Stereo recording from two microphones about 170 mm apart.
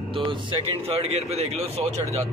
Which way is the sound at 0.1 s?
30° right (ahead or behind).